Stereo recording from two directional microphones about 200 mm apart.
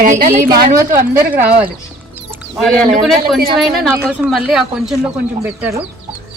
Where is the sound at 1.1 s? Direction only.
10° right (ahead or behind).